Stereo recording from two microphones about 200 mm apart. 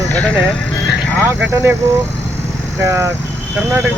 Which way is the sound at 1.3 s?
10° right (ahead or behind).